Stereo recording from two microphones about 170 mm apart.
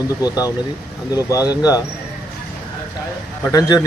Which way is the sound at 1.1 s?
20° left (ahead or behind).